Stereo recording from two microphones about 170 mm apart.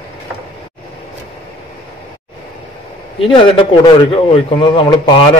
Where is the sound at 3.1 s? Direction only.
30° left (ahead or behind).